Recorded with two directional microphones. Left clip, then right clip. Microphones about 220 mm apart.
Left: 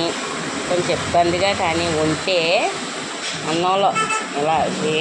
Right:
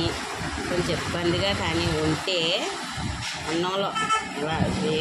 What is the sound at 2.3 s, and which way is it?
Music, 20° right (ahead or behind).